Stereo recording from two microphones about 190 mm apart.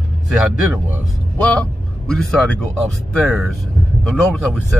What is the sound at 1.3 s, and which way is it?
Speech, 5° left (ahead or behind).